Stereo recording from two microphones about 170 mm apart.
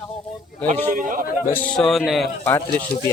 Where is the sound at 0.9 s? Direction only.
50° right (ahead or behind).